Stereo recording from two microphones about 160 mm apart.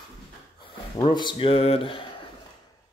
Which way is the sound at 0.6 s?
30° left (ahead or behind).